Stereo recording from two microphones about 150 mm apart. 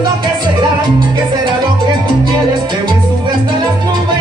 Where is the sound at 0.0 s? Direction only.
30° right (ahead or behind).